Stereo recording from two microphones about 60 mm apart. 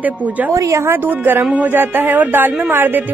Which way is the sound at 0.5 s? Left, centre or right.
Right.